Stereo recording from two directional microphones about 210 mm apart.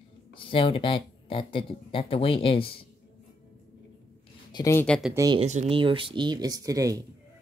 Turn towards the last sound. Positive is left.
turn(degrees=-15)  # may be behind; listen again after turning